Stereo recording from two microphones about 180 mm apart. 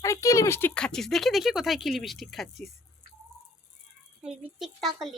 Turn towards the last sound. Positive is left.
turn(degrees=0)  # may be behind; listen again after turning